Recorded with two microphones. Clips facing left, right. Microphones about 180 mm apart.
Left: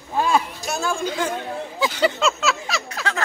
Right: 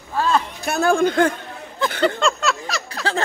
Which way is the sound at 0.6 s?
60° right (ahead or behind).